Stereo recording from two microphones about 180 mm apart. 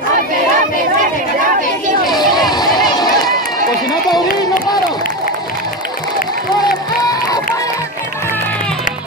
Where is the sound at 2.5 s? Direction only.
20° left (ahead or behind).